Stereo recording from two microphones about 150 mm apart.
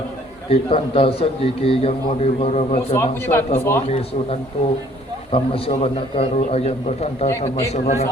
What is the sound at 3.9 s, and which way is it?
A man's voice, 40° left (ahead or behind).